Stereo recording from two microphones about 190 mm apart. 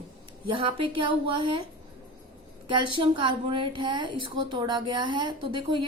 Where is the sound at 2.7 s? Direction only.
25° right (ahead or behind).